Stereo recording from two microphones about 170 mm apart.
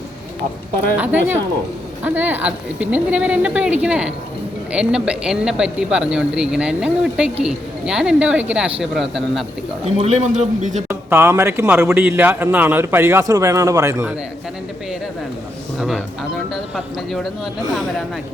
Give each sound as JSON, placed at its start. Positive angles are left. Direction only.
{"t": 0.9, "sound": "speech", "side_deg": -10}
{"t": 9.8, "sound": "a man's voice", "side_deg": -40}
{"t": 10.8, "sound": "speech", "side_deg": -10}
{"t": 15.8, "sound": "speech", "side_deg": 0}